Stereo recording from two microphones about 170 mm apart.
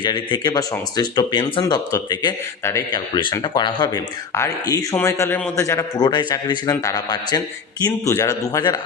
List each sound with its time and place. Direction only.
0.0 s speech: 25° left (ahead or behind)